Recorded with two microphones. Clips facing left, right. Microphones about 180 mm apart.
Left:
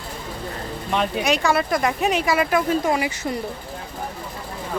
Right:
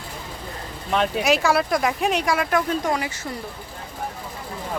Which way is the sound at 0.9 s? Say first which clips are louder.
Right 1 dB; centre (ahead or behind).